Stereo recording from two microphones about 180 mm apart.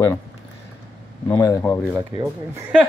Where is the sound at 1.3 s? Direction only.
20° left (ahead or behind).